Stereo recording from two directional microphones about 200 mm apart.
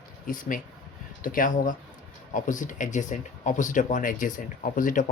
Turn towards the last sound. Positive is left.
turn(degrees=40)  # may be behind; listen again after turning